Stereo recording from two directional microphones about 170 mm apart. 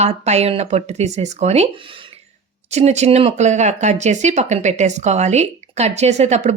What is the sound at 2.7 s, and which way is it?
Speech, 40° right (ahead or behind).